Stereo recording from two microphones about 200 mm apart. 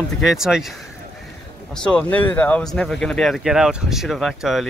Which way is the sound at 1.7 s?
5° left (ahead or behind).